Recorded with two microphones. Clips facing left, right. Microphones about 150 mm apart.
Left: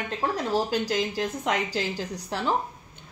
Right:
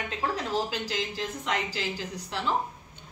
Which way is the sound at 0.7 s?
45° left (ahead or behind).